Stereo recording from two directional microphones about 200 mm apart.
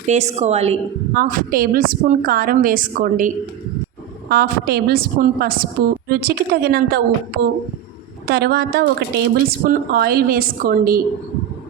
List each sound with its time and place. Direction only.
0.1 s a woman's voice: 35° right (ahead or behind)
1.2 s a woman's voice: 45° right (ahead or behind)
8.3 s a woman's voice: 50° right (ahead or behind)